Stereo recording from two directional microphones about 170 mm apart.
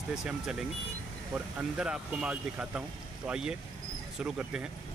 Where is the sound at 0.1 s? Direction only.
5° right (ahead or behind).